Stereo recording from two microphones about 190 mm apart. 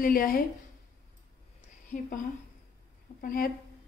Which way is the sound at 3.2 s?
50° left (ahead or behind).